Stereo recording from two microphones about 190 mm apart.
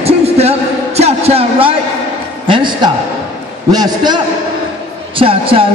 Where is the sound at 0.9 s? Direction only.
35° right (ahead or behind).